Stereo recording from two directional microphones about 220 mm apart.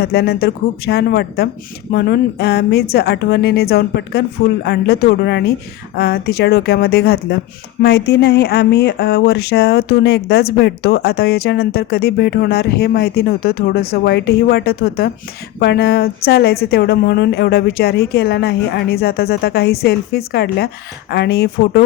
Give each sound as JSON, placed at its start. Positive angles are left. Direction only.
{"t": 0.0, "sound": "speech", "side_deg": 45}